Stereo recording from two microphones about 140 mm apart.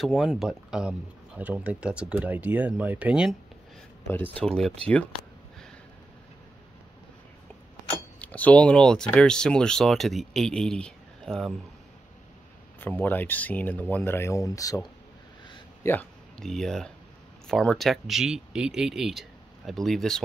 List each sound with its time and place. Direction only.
0.0 s speech: centre (ahead or behind)
4.1 s speech: 10° left (ahead or behind)
8.2 s speech: 10° left (ahead or behind)
12.8 s speech: 15° left (ahead or behind)
15.8 s speech: 15° left (ahead or behind)
16.3 s speech: 5° left (ahead or behind)